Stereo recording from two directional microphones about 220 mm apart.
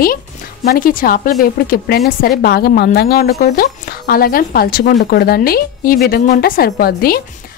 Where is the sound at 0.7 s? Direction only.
40° left (ahead or behind).